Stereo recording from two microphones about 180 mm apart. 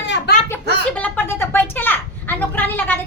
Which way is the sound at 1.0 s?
10° left (ahead or behind).